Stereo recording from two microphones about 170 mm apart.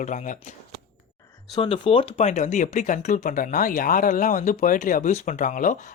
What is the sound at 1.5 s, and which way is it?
Speech, 30° left (ahead or behind).